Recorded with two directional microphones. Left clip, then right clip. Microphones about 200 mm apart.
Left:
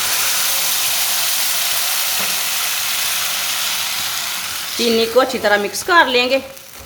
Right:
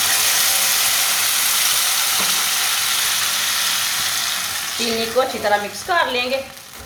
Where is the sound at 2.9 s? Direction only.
5° right (ahead or behind).